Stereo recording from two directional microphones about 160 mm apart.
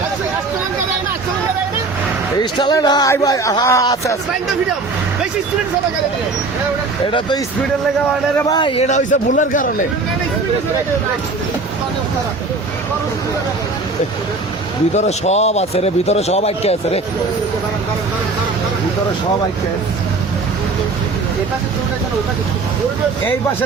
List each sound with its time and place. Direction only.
2.4 s speech: 30° left (ahead or behind)
7.1 s speech: 30° left (ahead or behind)
8.5 s speech: 30° left (ahead or behind)
8.8 s a man's voice: 50° left (ahead or behind)
14.9 s speech: 45° left (ahead or behind)